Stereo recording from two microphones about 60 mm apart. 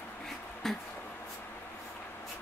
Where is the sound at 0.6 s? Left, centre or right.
Centre.